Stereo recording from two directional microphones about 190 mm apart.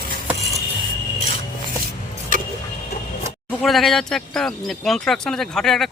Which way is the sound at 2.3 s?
45° right (ahead or behind).